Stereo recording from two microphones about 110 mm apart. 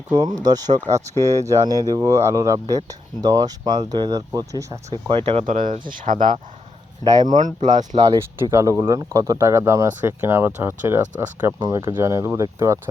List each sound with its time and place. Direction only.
0.1 s speech: 40° right (ahead or behind)
5.0 s speech: 60° right (ahead or behind)
7.0 s speech: 35° right (ahead or behind)
7.3 s speech: 90° right
8.4 s speech: 30° right (ahead or behind)